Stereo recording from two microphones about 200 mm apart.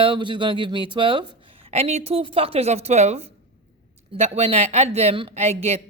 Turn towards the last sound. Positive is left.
turn(degrees=-30)  # may be behind; listen again after turning